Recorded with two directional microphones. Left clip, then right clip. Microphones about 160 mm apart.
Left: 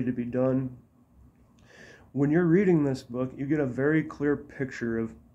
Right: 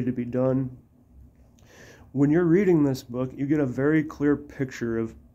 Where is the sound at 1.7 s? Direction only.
25° right (ahead or behind).